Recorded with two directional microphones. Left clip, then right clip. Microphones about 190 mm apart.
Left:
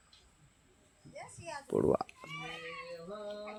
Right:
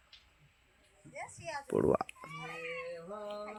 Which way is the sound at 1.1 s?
65° left (ahead or behind).